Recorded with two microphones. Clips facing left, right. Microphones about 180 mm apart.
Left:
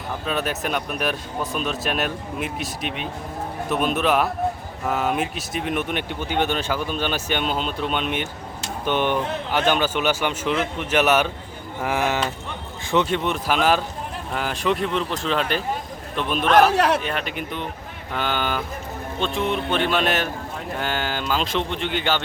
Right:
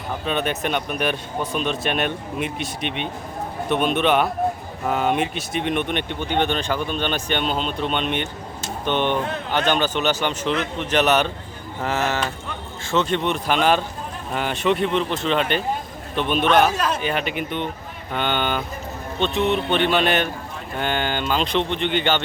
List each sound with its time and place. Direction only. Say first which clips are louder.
0.3 s speech: right 2 dB; centre (ahead or behind)
16.7 s speech: left 4 dB; 65° left (ahead or behind)
17.0 s speech: right 3 dB; centre (ahead or behind)